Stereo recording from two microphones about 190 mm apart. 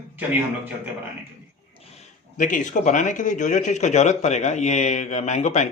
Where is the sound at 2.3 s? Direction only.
45° left (ahead or behind).